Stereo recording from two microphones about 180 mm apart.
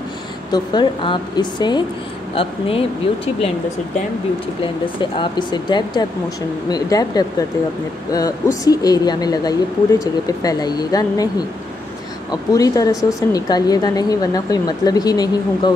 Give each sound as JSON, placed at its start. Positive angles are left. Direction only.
{"t": 0.5, "sound": "a woman's voice", "side_deg": 25}
{"t": 5.1, "sound": "a woman's voice", "side_deg": 25}